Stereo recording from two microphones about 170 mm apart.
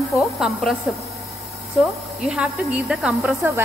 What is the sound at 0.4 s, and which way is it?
Speech, centre (ahead or behind).